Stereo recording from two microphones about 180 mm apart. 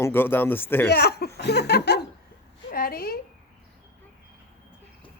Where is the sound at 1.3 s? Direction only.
70° left (ahead or behind).